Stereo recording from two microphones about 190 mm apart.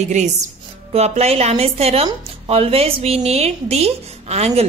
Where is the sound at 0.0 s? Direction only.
40° right (ahead or behind).